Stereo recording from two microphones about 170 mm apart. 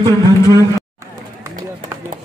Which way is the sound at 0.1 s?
20° left (ahead or behind).